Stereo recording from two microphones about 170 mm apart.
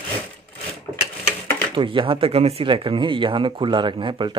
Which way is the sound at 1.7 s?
30° right (ahead or behind).